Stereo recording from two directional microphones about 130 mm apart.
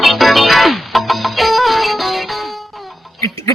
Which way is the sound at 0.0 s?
Centre (ahead or behind).